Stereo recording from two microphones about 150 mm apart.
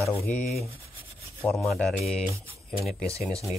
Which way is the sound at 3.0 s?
20° right (ahead or behind).